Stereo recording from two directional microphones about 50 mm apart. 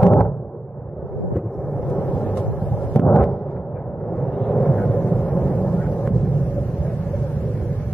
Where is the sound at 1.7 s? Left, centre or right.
Left.